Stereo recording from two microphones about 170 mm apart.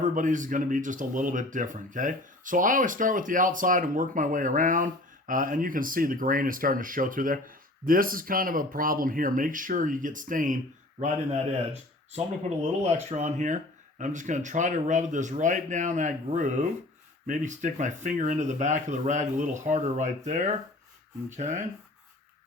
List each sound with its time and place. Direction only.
0.0 s speech: 50° right (ahead or behind)
12.8 s speech: 40° right (ahead or behind)